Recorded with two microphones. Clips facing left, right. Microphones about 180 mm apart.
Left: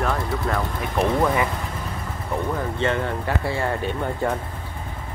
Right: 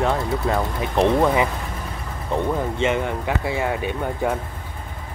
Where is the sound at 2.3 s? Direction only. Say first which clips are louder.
Right 3 dB; 20° right (ahead or behind).